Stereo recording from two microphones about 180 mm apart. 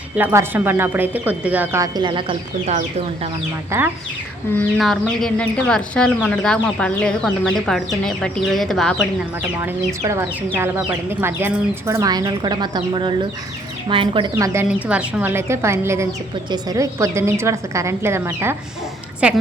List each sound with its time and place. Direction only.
0.2 s speech: 10° right (ahead or behind); by 2.8 s 35° right (ahead or behind)
3.7 s speech: 15° right (ahead or behind)
4.8 s speech: centre (ahead or behind)
9.6 s speech: 15° right (ahead or behind)